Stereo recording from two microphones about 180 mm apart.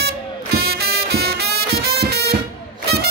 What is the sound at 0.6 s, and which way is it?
Music, 60° right (ahead or behind).